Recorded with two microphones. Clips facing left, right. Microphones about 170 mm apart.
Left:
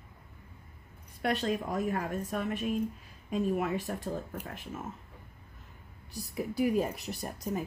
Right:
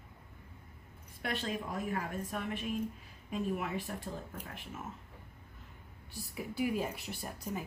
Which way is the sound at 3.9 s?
45° left (ahead or behind).